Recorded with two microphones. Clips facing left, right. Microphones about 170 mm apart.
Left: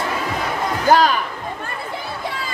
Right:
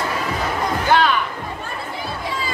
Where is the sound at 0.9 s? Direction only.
40° left (ahead or behind).